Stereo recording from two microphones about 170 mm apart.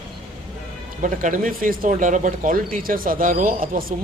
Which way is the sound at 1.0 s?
50° right (ahead or behind).